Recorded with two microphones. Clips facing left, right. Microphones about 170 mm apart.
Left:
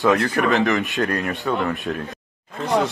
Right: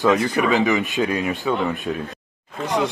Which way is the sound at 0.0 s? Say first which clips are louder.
Even; centre (ahead or behind).